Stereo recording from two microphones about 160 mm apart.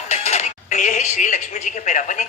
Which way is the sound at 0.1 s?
45° left (ahead or behind).